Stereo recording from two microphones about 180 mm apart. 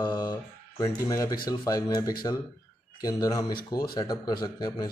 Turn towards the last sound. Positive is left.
turn(degrees=25)  # may be behind; listen again after turning